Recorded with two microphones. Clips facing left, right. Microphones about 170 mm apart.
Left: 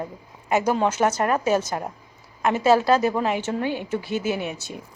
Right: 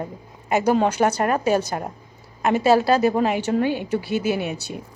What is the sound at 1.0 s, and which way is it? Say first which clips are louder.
A woman's voice: right 1 dB; 35° right (ahead or behind).